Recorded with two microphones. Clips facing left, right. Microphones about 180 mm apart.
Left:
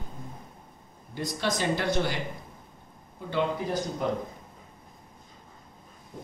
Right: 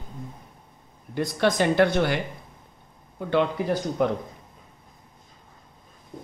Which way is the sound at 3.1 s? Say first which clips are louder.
Right 5 dB; 65° right (ahead or behind).